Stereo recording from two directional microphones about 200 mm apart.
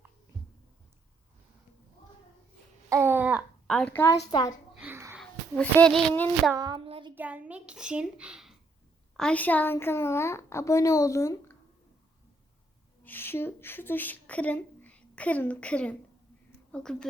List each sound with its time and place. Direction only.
2.9 s babbling: 10° right (ahead or behind)
3.7 s a woman's voice: 5° left (ahead or behind)
4.7 s a sound: 10° right (ahead or behind)
5.2 s a child's voice: 5° left (ahead or behind)
6.5 s a sound: 20° right (ahead or behind)
7.2 s a child's voice: 10° right (ahead or behind); by 11.5 s 15° left (ahead or behind)
13.0 s a child's voice: 10° left (ahead or behind)